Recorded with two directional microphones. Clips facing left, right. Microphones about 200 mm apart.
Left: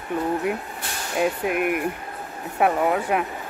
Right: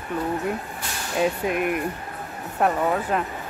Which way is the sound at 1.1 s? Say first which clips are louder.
Even; 5° left (ahead or behind).